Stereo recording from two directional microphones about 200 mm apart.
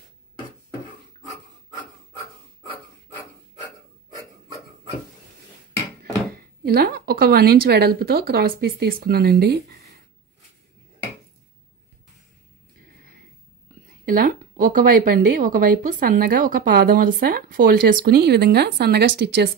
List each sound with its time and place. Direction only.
6.3 s a woman's voice: 50° right (ahead or behind)
13.8 s a woman's voice: 45° right (ahead or behind)